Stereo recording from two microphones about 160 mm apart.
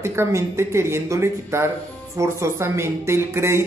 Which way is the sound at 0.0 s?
15° right (ahead or behind).